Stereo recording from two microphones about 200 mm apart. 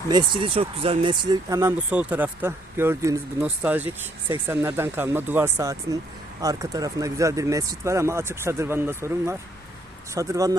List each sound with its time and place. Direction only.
0.3 s speech: 25° right (ahead or behind)